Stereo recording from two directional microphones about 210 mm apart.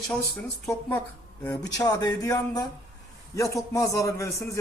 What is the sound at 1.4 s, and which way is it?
A man's voice, 15° left (ahead or behind).